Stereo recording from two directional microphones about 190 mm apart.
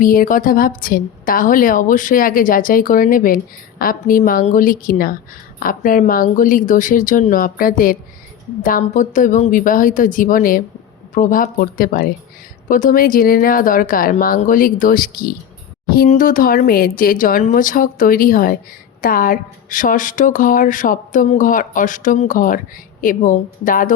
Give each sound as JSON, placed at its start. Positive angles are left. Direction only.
{"t": 0.0, "sound": "a woman's voice", "side_deg": 45}